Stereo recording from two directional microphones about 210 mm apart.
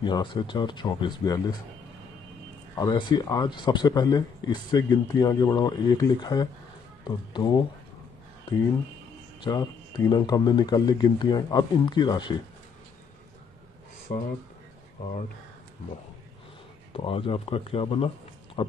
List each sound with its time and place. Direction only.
0.0 s speech: 20° left (ahead or behind)
2.7 s speech: 20° left (ahead or behind)
9.4 s speech: 20° left (ahead or behind)
16.9 s speech: 25° left (ahead or behind)
18.6 s a sound: 25° left (ahead or behind)